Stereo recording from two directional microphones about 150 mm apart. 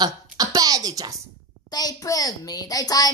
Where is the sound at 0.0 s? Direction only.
25° right (ahead or behind).